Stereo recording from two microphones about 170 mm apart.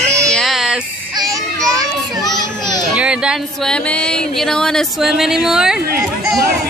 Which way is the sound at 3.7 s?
5° left (ahead or behind).